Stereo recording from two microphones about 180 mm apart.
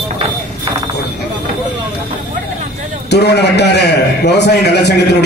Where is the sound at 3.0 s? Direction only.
65° left (ahead or behind).